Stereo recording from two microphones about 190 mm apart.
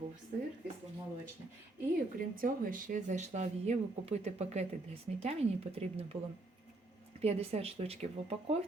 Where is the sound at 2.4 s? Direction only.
45° right (ahead or behind).